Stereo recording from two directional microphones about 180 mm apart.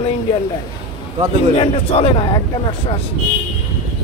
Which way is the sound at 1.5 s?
30° left (ahead or behind).